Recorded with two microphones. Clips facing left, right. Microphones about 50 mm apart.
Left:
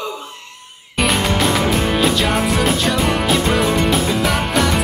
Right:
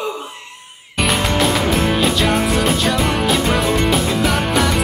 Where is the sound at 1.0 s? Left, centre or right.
Centre.